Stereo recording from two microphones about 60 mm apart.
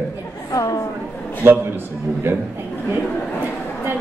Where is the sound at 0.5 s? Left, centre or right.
Left.